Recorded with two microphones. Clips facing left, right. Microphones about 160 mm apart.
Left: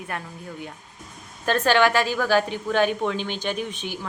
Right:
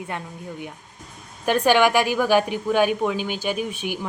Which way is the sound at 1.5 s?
15° right (ahead or behind).